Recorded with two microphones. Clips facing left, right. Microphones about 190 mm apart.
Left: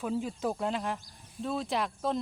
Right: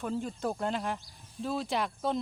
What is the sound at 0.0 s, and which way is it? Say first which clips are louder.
Speech: left 1 dB; 5° left (ahead or behind).